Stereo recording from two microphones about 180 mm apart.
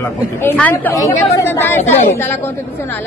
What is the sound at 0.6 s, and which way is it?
A woman's voice, 10° left (ahead or behind).